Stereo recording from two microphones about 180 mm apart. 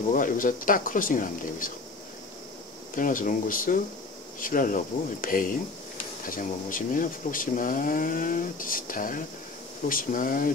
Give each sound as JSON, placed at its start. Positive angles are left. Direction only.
{"t": 0.1, "sound": "speech", "side_deg": 50}
{"t": 2.9, "sound": "speech", "side_deg": 50}